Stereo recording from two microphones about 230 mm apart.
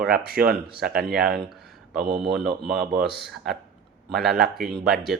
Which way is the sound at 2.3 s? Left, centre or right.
Right.